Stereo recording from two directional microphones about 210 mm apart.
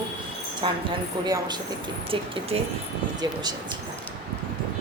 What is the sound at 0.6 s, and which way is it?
A woman's voice, 25° right (ahead or behind).